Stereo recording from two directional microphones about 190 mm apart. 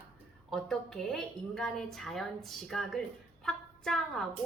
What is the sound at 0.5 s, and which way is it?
A woman's voice, centre (ahead or behind).